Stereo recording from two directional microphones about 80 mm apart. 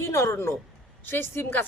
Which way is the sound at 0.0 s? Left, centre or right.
Left.